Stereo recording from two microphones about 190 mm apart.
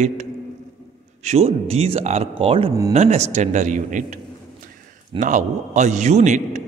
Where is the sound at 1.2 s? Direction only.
35° right (ahead or behind).